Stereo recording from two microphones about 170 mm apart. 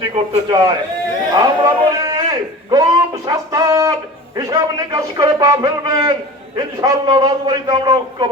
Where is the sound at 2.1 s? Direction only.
20° right (ahead or behind).